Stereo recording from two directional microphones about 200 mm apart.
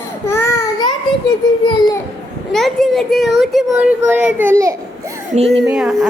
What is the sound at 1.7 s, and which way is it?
Speech, 20° left (ahead or behind).